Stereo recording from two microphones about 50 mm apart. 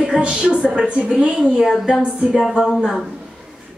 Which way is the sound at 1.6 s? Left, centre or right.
Centre.